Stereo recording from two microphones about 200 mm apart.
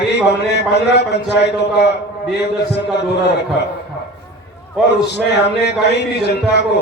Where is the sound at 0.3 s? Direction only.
55° left (ahead or behind).